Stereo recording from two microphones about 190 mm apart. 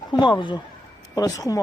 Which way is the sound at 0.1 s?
25° left (ahead or behind).